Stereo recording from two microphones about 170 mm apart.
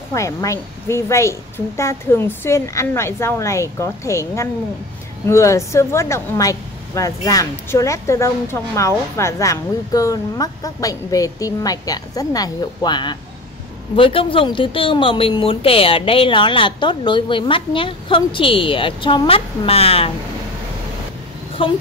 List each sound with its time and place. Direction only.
0.1 s a woman's voice: 20° left (ahead or behind); by 20.1 s 35° left (ahead or behind)
21.6 s speech: 30° left (ahead or behind)